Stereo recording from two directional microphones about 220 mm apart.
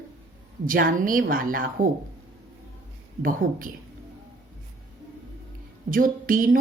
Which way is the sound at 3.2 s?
40° right (ahead or behind).